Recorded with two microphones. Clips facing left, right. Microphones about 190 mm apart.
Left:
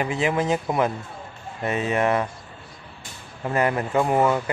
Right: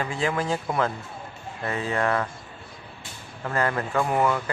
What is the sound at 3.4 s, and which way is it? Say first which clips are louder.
Speech: left 3 dB; 20° left (ahead or behind).